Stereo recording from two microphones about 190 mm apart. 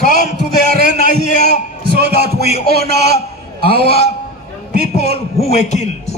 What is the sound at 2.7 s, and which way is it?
Speech, 55° right (ahead or behind).